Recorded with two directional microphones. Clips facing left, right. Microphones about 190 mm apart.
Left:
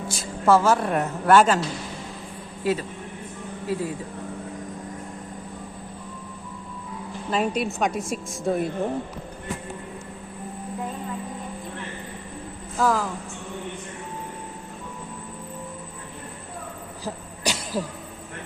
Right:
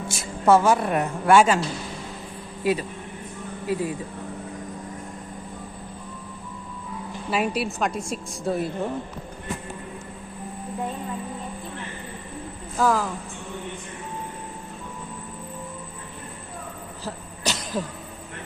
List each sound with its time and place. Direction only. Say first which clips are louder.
0.1 s a woman's voice: right 1 dB; 25° right (ahead or behind)
2.6 s a woman's voice: right 1 dB; 15° right (ahead or behind)
7.3 s a woman's voice: left 1 dB; 10° right (ahead or behind)
12.7 s a woman's voice: right 1 dB; centre (ahead or behind)
17.0 s vehicle: left 2 dB; 15° left (ahead or behind)